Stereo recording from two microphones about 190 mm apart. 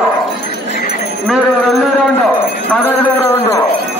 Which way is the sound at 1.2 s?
Centre (ahead or behind).